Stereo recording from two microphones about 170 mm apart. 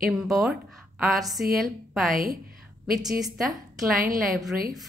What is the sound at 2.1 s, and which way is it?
Speech, 55° right (ahead or behind).